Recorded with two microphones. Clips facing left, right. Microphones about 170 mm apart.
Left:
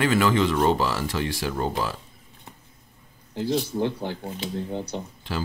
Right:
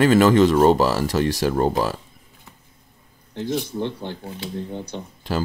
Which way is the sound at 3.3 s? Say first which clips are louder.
Even; 10° left (ahead or behind).